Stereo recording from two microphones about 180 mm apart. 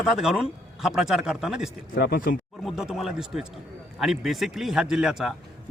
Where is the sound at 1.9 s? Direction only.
55° left (ahead or behind).